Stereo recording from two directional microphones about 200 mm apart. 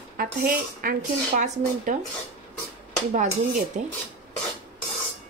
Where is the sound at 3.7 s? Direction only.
40° right (ahead or behind).